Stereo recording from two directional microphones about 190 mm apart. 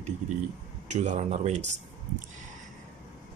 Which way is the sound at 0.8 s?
40° right (ahead or behind).